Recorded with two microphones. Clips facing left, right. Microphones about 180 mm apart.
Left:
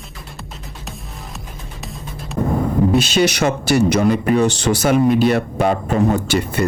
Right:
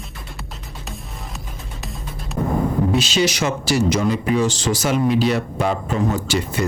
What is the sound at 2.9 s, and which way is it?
Speech, 55° left (ahead or behind).